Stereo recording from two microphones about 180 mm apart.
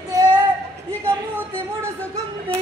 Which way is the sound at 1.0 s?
15° right (ahead or behind).